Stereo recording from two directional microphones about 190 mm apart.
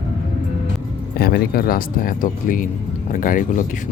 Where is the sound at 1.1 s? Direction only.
55° left (ahead or behind).